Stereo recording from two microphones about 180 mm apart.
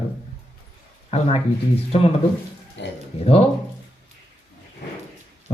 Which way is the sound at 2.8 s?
80° left.